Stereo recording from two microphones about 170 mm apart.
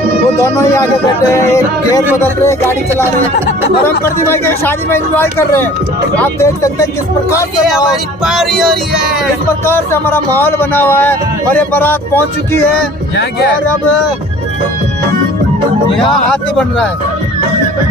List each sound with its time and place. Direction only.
0.4 s speech: 20° left (ahead or behind)
3.8 s a man's voice: 15° left (ahead or behind)
7.6 s speech: centre (ahead or behind)
9.7 s a man's voice: 15° left (ahead or behind)
15.9 s speech: 30° left (ahead or behind)
16.3 s speech: 5° left (ahead or behind)